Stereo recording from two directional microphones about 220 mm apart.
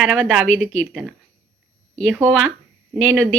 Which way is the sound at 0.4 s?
65° right (ahead or behind).